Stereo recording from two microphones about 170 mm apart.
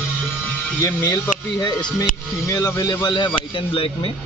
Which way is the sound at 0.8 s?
20° left (ahead or behind).